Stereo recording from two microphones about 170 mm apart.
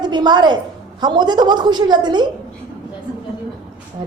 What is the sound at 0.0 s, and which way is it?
A woman's voice, 25° right (ahead or behind).